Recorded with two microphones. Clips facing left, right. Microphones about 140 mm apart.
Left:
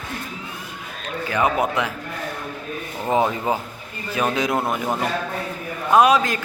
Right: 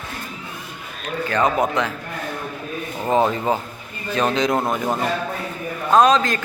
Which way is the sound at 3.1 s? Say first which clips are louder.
Right 2 dB; 10° left (ahead or behind).